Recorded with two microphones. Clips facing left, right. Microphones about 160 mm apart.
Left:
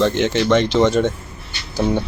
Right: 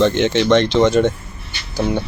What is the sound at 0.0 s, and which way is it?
Speech, 5° left (ahead or behind).